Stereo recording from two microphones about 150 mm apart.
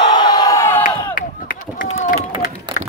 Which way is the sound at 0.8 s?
65° left (ahead or behind).